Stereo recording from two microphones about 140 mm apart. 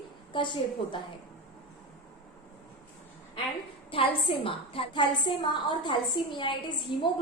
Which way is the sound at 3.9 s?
40° left (ahead or behind).